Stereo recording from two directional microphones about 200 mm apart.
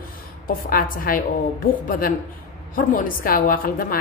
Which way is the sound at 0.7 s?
45° left (ahead or behind).